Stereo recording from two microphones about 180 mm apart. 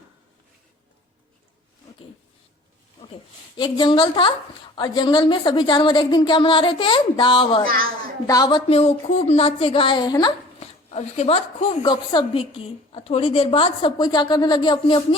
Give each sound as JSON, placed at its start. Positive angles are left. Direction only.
{"t": 3.6, "sound": "speech", "side_deg": 25}
{"t": 10.6, "sound": "a woman's voice", "side_deg": 35}